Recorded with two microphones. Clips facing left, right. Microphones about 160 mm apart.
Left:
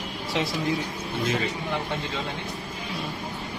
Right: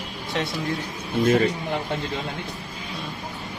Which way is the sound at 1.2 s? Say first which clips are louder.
Right 9 dB; 50° right (ahead or behind).